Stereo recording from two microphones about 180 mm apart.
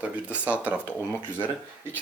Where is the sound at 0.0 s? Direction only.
5° right (ahead or behind).